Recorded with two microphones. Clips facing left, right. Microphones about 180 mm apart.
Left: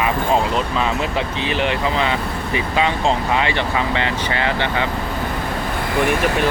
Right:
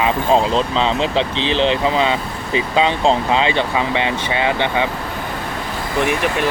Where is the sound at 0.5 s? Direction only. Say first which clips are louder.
Right 3 dB; 25° right (ahead or behind).